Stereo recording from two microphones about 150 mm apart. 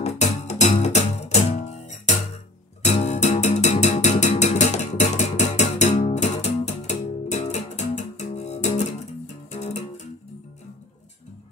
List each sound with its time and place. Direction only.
0.0 s music: 50° left (ahead or behind)